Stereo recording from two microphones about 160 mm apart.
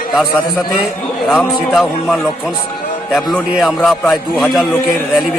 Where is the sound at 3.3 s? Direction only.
Centre (ahead or behind).